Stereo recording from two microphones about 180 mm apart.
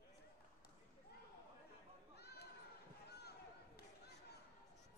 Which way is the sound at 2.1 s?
65° left (ahead or behind).